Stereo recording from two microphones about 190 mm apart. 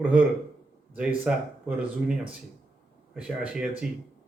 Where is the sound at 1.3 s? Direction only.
5° right (ahead or behind).